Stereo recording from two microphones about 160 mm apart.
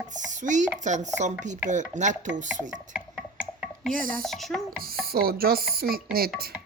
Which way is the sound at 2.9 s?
5° right (ahead or behind).